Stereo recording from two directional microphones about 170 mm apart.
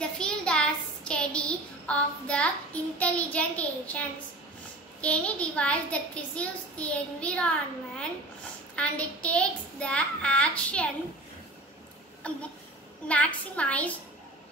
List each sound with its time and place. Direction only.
0.0 s child singing: 5° left (ahead or behind)
5.0 s a child's voice: 5° left (ahead or behind)
8.7 s a child's voice: 5° left (ahead or behind)
12.2 s a child's voice: 5° left (ahead or behind)